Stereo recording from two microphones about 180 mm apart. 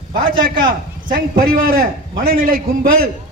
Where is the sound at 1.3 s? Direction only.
55° right (ahead or behind).